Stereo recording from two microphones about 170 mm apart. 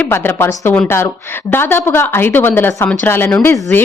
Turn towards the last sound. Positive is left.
turn(degrees=15)  # may be behind; listen again after turning